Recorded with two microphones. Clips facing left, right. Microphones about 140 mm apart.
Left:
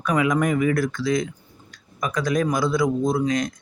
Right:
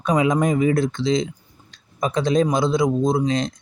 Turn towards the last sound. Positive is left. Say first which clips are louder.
# right 2 dB
turn(degrees=-25)  # may be behind; listen again after turning